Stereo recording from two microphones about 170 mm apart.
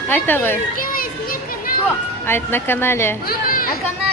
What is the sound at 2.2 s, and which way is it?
Speech, 15° left (ahead or behind).